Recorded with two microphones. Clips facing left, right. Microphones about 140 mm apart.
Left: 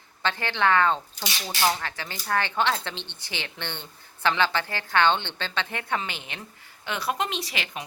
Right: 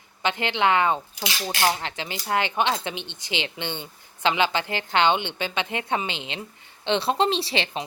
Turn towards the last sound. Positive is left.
turn(degrees=-30)  # may be behind; listen again after turning